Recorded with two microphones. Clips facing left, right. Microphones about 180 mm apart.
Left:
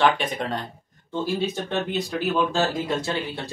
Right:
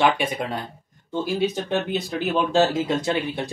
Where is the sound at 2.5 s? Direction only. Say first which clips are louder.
Right 4 dB; 20° right (ahead or behind).